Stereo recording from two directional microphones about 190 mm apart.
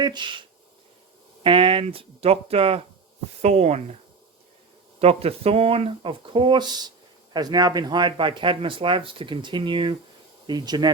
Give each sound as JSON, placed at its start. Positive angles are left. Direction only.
{"t": 0.0, "sound": "speech", "side_deg": -25}
{"t": 1.5, "sound": "speech", "side_deg": -25}
{"t": 4.9, "sound": "speech", "side_deg": -30}